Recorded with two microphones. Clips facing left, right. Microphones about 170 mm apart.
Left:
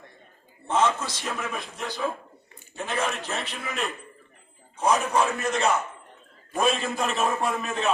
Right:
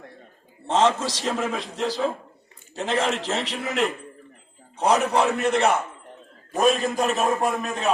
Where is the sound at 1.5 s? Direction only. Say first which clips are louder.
Right 6 dB; 90° right.